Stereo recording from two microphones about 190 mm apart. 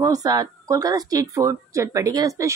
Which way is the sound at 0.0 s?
20° right (ahead or behind).